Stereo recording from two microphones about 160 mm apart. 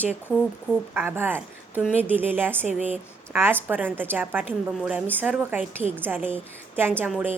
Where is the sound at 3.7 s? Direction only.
10° right (ahead or behind).